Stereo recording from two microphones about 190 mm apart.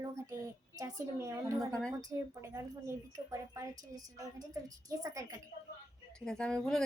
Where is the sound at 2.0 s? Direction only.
20° right (ahead or behind).